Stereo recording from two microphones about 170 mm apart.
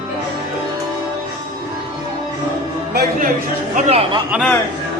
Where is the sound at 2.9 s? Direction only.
50° right (ahead or behind).